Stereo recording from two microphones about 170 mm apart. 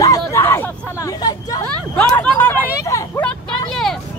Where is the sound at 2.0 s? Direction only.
5° left (ahead or behind).